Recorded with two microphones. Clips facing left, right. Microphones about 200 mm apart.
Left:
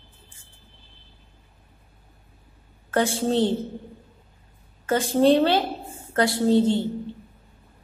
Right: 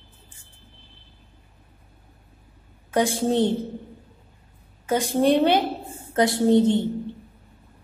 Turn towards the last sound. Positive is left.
turn(degrees=-20)  # may be behind; listen again after turning